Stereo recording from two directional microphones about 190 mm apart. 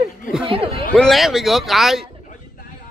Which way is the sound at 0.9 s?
Centre (ahead or behind).